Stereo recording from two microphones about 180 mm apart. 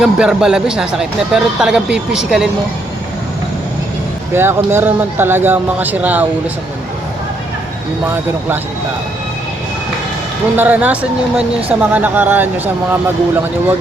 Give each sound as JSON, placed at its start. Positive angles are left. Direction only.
{"t": 0.0, "sound": "speech", "side_deg": -5}
{"t": 4.4, "sound": "speech", "side_deg": -15}
{"t": 10.6, "sound": "speech", "side_deg": -10}